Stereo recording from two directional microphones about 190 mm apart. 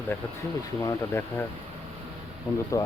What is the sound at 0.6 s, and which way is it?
Speech, 15° left (ahead or behind).